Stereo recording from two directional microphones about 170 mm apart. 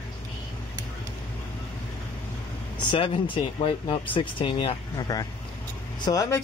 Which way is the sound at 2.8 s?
30° left (ahead or behind).